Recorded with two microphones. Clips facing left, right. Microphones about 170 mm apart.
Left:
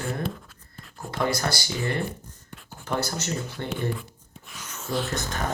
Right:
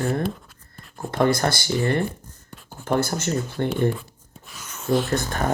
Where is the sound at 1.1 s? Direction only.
50° right (ahead or behind).